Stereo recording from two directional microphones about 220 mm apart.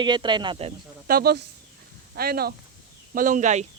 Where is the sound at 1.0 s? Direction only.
45° right (ahead or behind).